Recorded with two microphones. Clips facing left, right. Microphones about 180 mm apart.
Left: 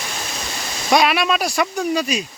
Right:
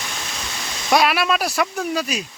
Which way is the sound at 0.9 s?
Centre (ahead or behind).